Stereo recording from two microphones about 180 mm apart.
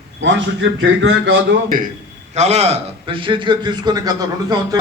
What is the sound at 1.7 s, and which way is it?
Speech, 50° right (ahead or behind).